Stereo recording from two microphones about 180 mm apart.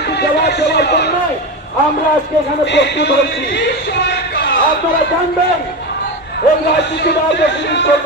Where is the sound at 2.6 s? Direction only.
75° left (ahead or behind).